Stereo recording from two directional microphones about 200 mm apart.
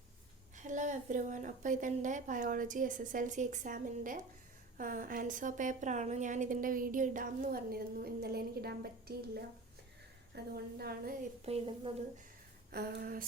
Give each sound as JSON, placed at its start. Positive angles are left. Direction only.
{"t": 0.5, "sound": "a woman's voice", "side_deg": -40}
{"t": 11.4, "sound": "a woman's voice", "side_deg": -30}
{"t": 12.7, "sound": "a woman's voice", "side_deg": -50}